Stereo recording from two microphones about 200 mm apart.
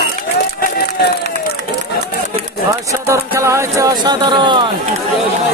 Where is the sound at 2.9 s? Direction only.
15° right (ahead or behind).